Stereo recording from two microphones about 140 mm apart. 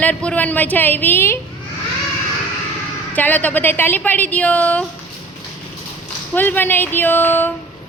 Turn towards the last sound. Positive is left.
turn(degrees=15)  # may be behind; listen again after turning